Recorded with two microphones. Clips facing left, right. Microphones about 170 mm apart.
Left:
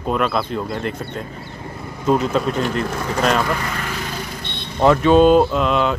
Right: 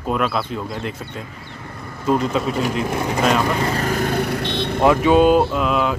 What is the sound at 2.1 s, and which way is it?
Speech, centre (ahead or behind).